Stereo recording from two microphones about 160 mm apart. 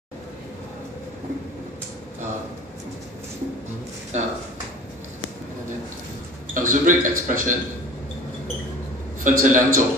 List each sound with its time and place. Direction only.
4.1 s speech: 45° right (ahead or behind)
6.5 s a man's voice: 55° right (ahead or behind)
9.2 s a man's voice: 55° right (ahead or behind)